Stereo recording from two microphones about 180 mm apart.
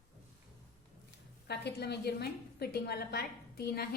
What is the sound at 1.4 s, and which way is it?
A woman's voice, 65° left (ahead or behind).